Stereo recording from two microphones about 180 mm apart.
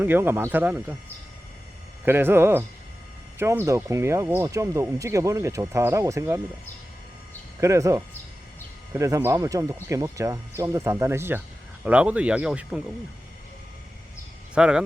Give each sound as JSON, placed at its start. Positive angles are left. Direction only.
{"t": 0.0, "sound": "speech", "side_deg": -10}
{"t": 2.0, "sound": "speech", "side_deg": -10}
{"t": 7.6, "sound": "speech", "side_deg": -15}
{"t": 14.5, "sound": "speech", "side_deg": -5}